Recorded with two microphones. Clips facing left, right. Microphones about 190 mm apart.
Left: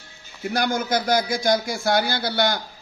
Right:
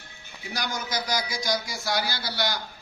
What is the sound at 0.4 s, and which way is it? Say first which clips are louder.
A man's voice: left 9 dB; 55° left (ahead or behind).